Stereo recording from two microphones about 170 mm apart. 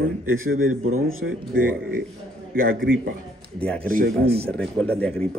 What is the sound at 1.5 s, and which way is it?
Speech, 60° right (ahead or behind).